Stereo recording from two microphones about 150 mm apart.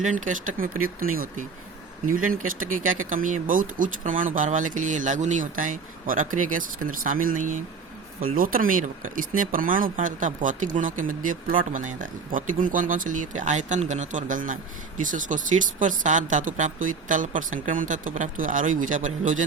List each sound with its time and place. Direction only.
0.0 s speech: 60° right (ahead or behind)